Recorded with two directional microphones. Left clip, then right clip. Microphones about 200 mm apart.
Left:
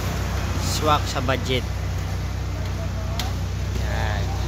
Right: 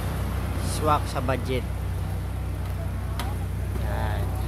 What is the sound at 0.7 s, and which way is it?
Speech, 5° right (ahead or behind).